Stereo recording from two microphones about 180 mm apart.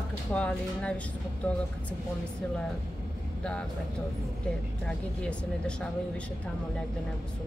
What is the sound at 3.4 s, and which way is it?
Speech, 5° left (ahead or behind).